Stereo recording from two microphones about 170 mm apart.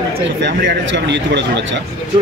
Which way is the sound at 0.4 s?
90° right.